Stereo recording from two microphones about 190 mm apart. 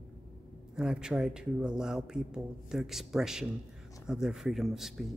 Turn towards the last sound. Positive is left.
turn(degrees=0)  # may be behind; listen again after turning